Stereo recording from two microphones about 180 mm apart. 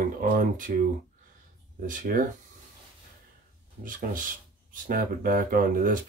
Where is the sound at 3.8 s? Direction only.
50° right (ahead or behind).